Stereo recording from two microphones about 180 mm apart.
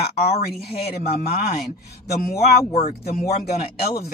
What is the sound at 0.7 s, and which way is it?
A woman's voice, 60° left (ahead or behind).